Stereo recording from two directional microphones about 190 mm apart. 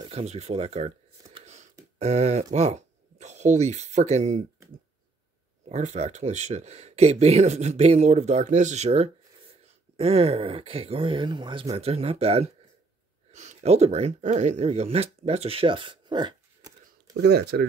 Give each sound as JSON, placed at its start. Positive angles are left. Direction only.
{"t": 0.0, "sound": "a sound", "side_deg": -35}
{"t": 2.0, "sound": "speech", "side_deg": -35}
{"t": 5.7, "sound": "speech", "side_deg": -35}
{"t": 17.2, "sound": "speech", "side_deg": -60}